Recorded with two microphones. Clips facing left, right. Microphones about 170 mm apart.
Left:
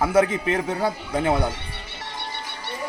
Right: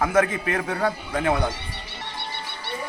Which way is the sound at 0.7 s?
10° left (ahead or behind).